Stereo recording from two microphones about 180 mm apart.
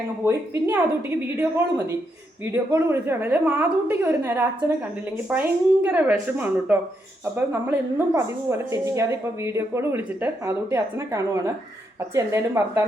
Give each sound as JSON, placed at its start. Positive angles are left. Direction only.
{"t": 0.3, "sound": "a woman's voice", "side_deg": -15}